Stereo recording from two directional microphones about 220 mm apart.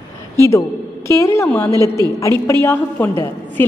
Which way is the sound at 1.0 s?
15° left (ahead or behind).